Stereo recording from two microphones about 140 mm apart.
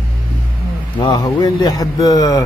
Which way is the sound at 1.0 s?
30° left (ahead or behind).